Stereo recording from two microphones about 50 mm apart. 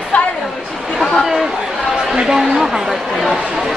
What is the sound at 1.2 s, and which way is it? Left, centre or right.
A woman's voice, centre.